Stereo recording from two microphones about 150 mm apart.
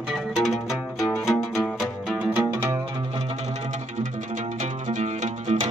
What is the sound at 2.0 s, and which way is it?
Music, 10° right (ahead or behind).